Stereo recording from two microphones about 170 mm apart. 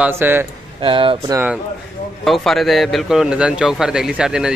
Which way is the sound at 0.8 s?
30° right (ahead or behind).